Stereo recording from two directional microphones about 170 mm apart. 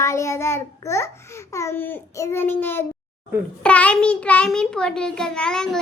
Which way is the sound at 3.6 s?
10° left (ahead or behind).